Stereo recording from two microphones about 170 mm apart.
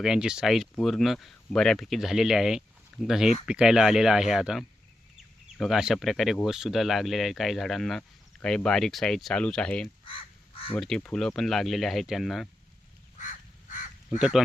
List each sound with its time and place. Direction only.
0.0 s speech: 5° right (ahead or behind)
10.1 s crow: 30° left (ahead or behind)
10.8 s speech: 5° left (ahead or behind)
13.1 s crow: 50° left (ahead or behind)
14.2 s speech: centre (ahead or behind)